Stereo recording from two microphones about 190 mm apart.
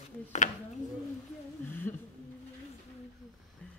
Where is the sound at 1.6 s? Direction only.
10° left (ahead or behind).